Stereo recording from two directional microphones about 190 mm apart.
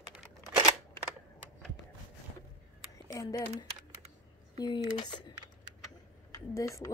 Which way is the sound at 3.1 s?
20° left (ahead or behind).